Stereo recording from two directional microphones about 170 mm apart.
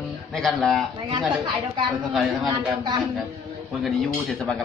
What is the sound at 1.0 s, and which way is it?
Speech, 25° right (ahead or behind).